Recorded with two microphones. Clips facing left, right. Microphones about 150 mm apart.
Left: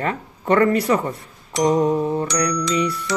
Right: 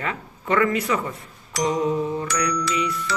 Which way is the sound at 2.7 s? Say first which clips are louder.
Left 4 dB; 40° left (ahead or behind).